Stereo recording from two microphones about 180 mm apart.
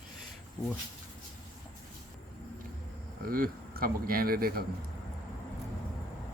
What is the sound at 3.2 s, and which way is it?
Speech, 55° right (ahead or behind).